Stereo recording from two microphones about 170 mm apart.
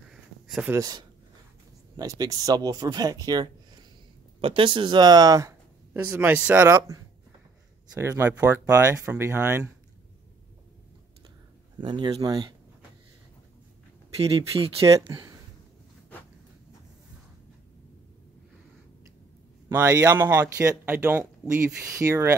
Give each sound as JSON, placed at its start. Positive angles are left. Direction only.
{"t": 0.1, "sound": "a sound", "side_deg": -5}
{"t": 0.7, "sound": "speech", "side_deg": -20}
{"t": 11.8, "sound": "speech", "side_deg": -25}
{"t": 14.9, "sound": "speech", "side_deg": -20}
{"t": 19.7, "sound": "speech", "side_deg": -15}